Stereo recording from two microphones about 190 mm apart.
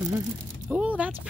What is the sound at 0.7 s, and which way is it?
Speech, 5° right (ahead or behind).